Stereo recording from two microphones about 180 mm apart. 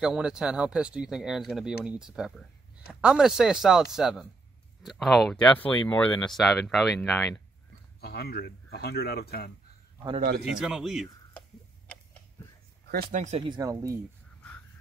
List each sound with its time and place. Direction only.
0.0 s speech: 5° right (ahead or behind)
8.0 s speech: 60° left (ahead or behind)
10.5 s speech: 5° right (ahead or behind)
13.1 s speech: 40° right (ahead or behind)
13.5 s speech: 20° right (ahead or behind)